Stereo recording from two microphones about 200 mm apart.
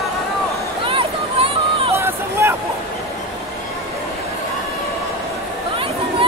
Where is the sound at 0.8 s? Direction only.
25° right (ahead or behind).